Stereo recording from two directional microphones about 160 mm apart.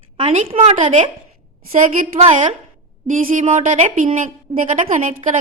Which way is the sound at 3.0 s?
55° right (ahead or behind).